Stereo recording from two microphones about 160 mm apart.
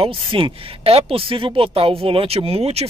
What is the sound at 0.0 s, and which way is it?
Speech, 35° right (ahead or behind).